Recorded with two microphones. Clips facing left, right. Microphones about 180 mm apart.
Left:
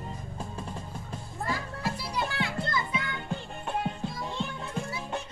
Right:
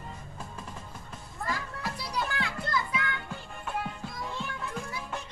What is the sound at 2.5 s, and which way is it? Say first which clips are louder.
Music: left 1 dB; 25° left (ahead or behind).